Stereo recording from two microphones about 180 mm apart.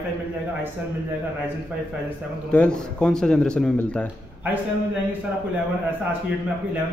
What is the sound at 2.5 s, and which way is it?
Speech, 5° left (ahead or behind).